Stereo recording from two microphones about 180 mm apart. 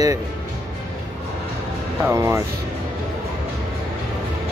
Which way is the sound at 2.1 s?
15° right (ahead or behind).